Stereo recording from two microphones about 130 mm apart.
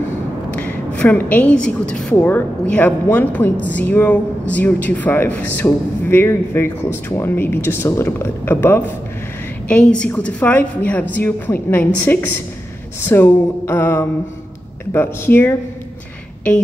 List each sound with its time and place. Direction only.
0.5 s a woman's voice: 10° left (ahead or behind)
9.7 s speech: 10° left (ahead or behind)